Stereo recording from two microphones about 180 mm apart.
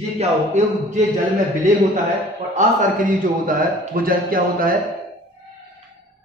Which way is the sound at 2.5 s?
45° right (ahead or behind).